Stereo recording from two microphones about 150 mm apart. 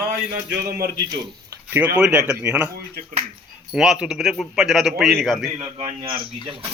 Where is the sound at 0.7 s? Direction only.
75° right (ahead or behind).